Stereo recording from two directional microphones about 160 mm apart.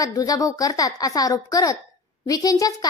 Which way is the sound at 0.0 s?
20° left (ahead or behind).